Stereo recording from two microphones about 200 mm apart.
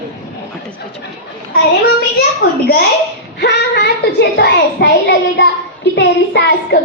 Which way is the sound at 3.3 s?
55° left (ahead or behind).